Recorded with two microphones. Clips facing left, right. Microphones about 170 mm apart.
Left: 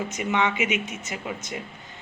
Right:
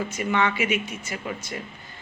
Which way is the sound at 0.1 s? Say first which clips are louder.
Even; 20° left (ahead or behind).